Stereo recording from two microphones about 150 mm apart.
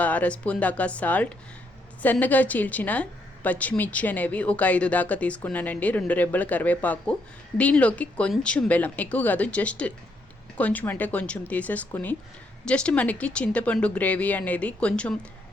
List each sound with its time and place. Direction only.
0.0 s a woman's voice: 10° left (ahead or behind)